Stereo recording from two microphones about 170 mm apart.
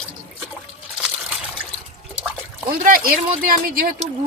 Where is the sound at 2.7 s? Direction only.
55° right (ahead or behind).